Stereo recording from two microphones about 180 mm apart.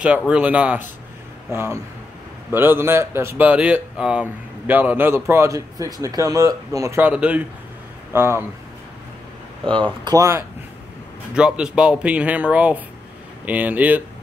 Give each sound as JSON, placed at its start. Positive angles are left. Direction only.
{"t": 0.3, "sound": "speech", "side_deg": -5}
{"t": 10.0, "sound": "speech", "side_deg": -15}
{"t": 11.3, "sound": "speech", "side_deg": -5}